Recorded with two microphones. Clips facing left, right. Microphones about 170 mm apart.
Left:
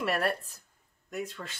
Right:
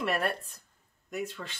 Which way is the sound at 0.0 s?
Centre (ahead or behind).